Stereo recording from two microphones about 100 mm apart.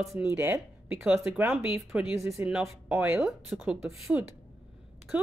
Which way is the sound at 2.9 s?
15° right (ahead or behind).